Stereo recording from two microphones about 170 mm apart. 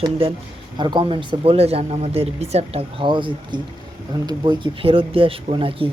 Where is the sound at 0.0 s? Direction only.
30° right (ahead or behind).